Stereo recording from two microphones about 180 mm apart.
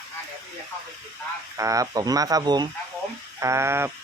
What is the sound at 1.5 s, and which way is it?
Speech, 20° right (ahead or behind).